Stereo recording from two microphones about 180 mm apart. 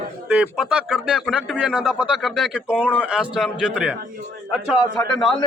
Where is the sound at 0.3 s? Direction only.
5° right (ahead or behind).